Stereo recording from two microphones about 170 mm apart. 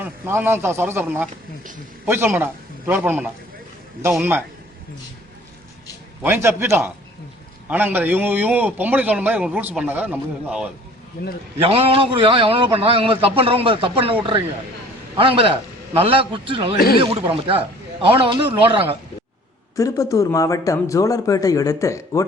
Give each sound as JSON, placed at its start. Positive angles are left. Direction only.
{"t": 0.0, "sound": "a man's voice", "side_deg": -10}
{"t": 6.2, "sound": "a man's voice", "side_deg": -15}
{"t": 11.6, "sound": "a man's voice", "side_deg": -35}
{"t": 15.2, "sound": "a man's voice", "side_deg": -30}
{"t": 16.7, "sound": "speech", "side_deg": 60}
{"t": 17.0, "sound": "a man's voice", "side_deg": -30}
{"t": 19.7, "sound": "speech", "side_deg": 20}